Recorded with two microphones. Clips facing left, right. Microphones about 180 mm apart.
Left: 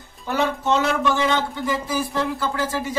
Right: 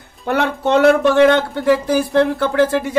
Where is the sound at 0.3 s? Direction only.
60° right (ahead or behind).